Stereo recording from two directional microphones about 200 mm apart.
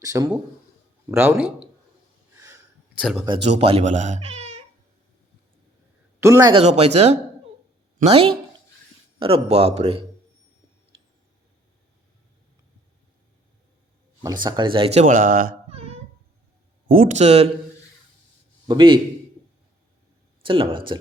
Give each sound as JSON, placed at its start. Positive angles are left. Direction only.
{"t": 0.0, "sound": "speech", "side_deg": -15}
{"t": 3.0, "sound": "speech", "side_deg": 0}
{"t": 3.2, "sound": "speech", "side_deg": -25}
{"t": 6.1, "sound": "speech", "side_deg": -15}
{"t": 14.4, "sound": "speech", "side_deg": -25}
{"t": 16.9, "sound": "speech", "side_deg": -40}
{"t": 18.7, "sound": "speech", "side_deg": -25}
{"t": 20.4, "sound": "speech", "side_deg": -25}